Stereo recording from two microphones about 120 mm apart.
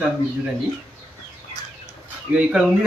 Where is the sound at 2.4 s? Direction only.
5° right (ahead or behind).